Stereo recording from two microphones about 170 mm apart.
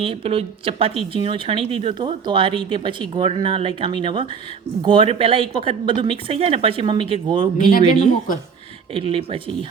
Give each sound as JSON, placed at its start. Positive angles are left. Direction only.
{"t": 0.0, "sound": "speech", "side_deg": -35}
{"t": 7.7, "sound": "a man's voice", "side_deg": 45}
{"t": 8.9, "sound": "speech", "side_deg": -30}